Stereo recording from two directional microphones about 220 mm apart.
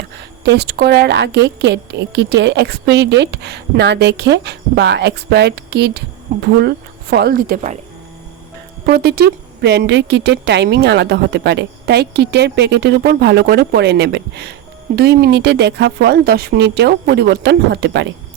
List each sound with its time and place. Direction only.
0.4 s speech: 45° right (ahead or behind)
8.9 s speech: 45° right (ahead or behind)